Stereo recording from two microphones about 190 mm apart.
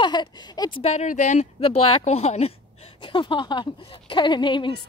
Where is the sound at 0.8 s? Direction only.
35° left (ahead or behind).